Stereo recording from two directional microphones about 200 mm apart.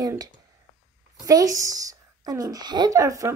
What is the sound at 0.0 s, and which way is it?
A woman's voice, 20° right (ahead or behind).